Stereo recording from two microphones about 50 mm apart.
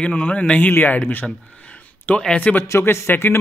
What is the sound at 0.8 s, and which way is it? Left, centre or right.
A man's voice, left.